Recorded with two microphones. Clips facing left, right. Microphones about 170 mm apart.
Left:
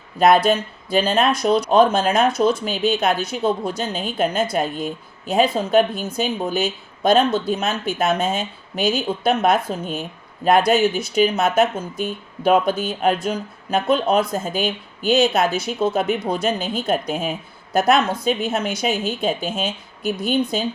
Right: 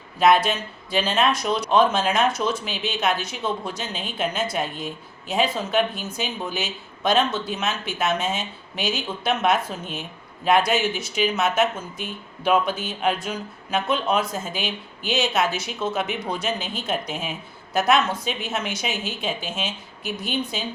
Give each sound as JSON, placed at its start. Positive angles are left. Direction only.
{"t": 0.2, "sound": "speech", "side_deg": 40}